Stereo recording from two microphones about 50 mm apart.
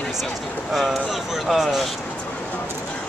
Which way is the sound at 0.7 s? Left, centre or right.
Centre.